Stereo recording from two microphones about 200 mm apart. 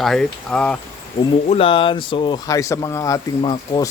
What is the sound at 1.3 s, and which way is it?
Speech, 25° left (ahead or behind).